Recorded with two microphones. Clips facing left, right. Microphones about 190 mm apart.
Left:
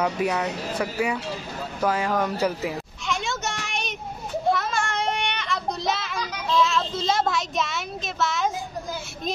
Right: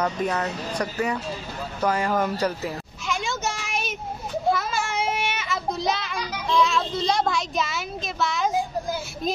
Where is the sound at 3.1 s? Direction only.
Centre (ahead or behind).